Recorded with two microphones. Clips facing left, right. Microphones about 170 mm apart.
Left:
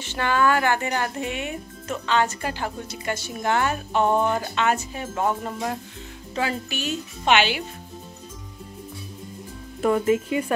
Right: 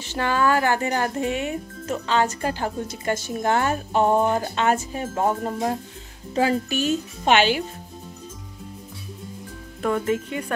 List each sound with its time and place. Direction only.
0.0 s speech: 35° right (ahead or behind)
9.8 s speech: 5° left (ahead or behind)